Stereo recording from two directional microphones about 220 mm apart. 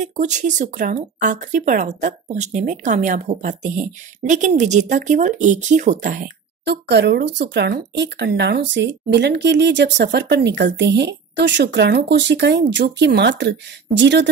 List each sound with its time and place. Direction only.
0.0 s speech: 35° right (ahead or behind); by 14.3 s 50° right (ahead or behind)